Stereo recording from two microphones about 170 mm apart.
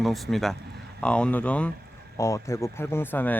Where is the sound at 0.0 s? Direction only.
Centre (ahead or behind).